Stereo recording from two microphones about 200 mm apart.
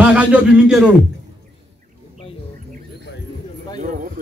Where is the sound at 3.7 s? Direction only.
40° right (ahead or behind).